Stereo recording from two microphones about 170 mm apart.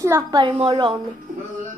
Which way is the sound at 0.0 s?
20° right (ahead or behind).